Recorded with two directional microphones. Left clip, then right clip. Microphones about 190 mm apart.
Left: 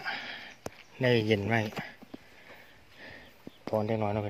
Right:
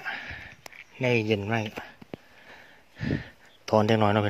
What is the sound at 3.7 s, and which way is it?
Speech, 55° right (ahead or behind).